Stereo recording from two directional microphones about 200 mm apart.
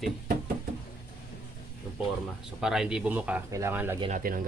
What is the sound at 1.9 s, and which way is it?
Speech, 5° right (ahead or behind).